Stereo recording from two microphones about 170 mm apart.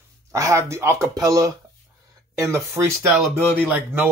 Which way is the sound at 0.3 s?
20° right (ahead or behind).